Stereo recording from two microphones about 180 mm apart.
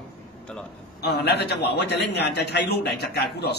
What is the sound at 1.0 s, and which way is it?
A man's voice, 60° left (ahead or behind).